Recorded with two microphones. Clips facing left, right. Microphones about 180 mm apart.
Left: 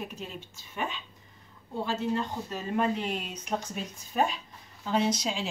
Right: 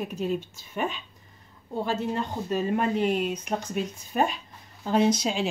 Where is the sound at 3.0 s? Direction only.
55° right (ahead or behind).